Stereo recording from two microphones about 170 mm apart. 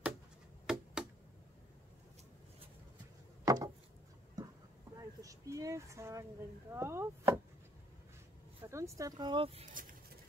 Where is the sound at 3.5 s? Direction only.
20° right (ahead or behind).